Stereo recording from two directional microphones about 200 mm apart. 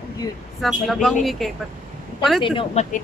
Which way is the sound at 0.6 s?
Centre (ahead or behind).